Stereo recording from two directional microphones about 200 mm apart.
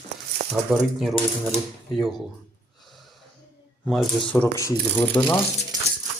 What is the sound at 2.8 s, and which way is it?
Snort, centre (ahead or behind).